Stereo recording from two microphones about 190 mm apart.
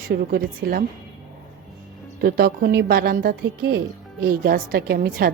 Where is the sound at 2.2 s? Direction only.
50° right (ahead or behind).